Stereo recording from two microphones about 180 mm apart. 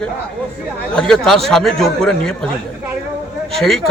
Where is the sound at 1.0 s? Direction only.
5° left (ahead or behind).